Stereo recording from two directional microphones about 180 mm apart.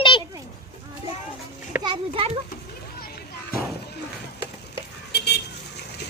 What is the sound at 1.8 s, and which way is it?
Children playing, 25° right (ahead or behind).